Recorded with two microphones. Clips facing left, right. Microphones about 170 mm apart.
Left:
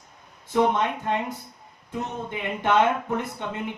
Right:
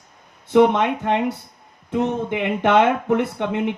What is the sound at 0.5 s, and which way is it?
Speech, 70° right (ahead or behind).